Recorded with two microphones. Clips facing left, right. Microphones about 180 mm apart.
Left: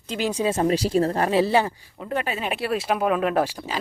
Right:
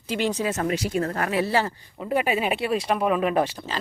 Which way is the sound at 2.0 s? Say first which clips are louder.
Right 4 dB; 10° right (ahead or behind).